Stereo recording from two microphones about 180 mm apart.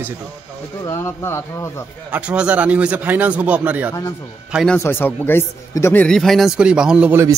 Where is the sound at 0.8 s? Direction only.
15° left (ahead or behind).